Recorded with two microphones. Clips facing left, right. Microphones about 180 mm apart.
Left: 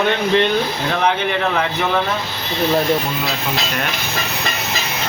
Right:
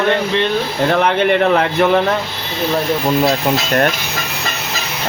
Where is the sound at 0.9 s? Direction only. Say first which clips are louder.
Right 6 dB; 60° right (ahead or behind).